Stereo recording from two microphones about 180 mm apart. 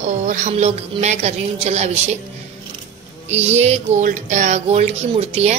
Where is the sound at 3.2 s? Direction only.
35° right (ahead or behind).